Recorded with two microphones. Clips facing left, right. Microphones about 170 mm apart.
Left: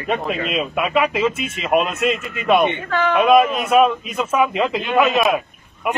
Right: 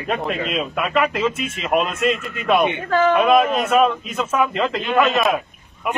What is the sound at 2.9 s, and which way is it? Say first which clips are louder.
Speech: right 3 dB; 35° right (ahead or behind).